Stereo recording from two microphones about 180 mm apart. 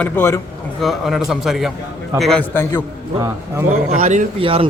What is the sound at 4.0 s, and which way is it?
Speech, 45° right (ahead or behind).